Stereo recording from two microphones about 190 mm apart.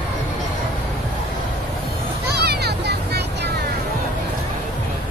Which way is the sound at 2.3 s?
60° right (ahead or behind).